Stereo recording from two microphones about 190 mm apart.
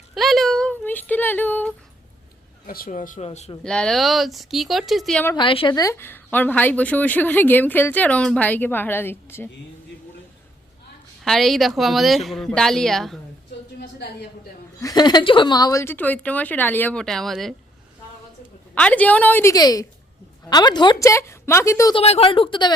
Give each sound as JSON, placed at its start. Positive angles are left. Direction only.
{"t": 0.1, "sound": "speech", "side_deg": 0}
{"t": 2.6, "sound": "speech", "side_deg": 50}
{"t": 3.6, "sound": "a woman's voice", "side_deg": 5}
{"t": 5.3, "sound": "speech", "side_deg": 25}
{"t": 11.2, "sound": "a woman's voice", "side_deg": 0}
{"t": 14.8, "sound": "speech", "side_deg": 20}
{"t": 18.7, "sound": "speech", "side_deg": 5}
{"t": 22.0, "sound": "a woman's voice", "side_deg": 30}